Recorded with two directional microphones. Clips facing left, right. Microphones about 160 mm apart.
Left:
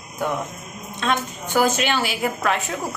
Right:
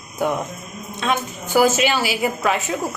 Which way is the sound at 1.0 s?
5° right (ahead or behind).